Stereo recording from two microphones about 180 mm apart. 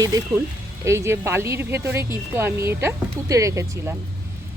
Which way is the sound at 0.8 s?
15° right (ahead or behind).